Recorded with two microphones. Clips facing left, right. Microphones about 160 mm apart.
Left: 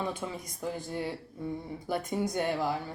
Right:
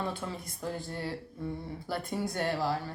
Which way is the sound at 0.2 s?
15° left (ahead or behind).